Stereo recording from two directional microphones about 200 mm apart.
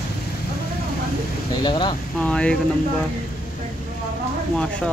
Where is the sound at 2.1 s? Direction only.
5° left (ahead or behind).